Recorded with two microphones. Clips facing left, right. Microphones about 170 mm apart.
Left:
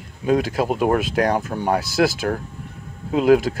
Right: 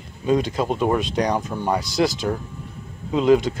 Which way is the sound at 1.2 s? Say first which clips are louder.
Left 2 dB; 55° left (ahead or behind).